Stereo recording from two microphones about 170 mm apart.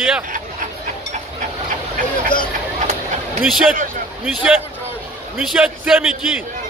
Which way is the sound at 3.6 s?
50° right (ahead or behind).